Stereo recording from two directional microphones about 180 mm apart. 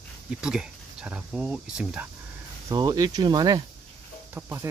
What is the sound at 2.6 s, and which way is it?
Speech, 20° right (ahead or behind).